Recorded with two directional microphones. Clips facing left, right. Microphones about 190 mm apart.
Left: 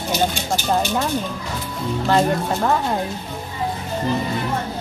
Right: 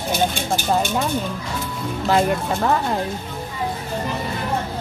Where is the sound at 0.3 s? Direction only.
55° right (ahead or behind).